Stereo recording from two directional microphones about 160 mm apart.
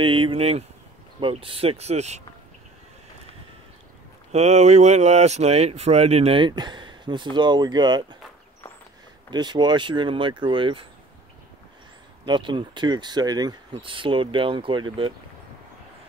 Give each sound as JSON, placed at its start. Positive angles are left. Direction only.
{"t": 0.0, "sound": "speech", "side_deg": -35}
{"t": 4.3, "sound": "speech", "side_deg": -45}
{"t": 9.3, "sound": "speech", "side_deg": -25}
{"t": 12.3, "sound": "speech", "side_deg": -30}